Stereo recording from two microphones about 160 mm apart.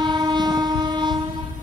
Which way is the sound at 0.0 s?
25° right (ahead or behind).